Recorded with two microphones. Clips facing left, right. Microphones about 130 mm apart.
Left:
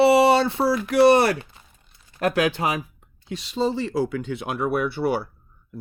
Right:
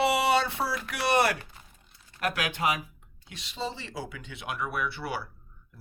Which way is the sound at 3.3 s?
40° left (ahead or behind).